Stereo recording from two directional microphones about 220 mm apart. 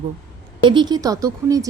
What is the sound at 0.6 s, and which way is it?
Speech, 20° right (ahead or behind).